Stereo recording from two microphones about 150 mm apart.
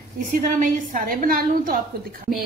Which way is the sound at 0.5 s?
65° right (ahead or behind).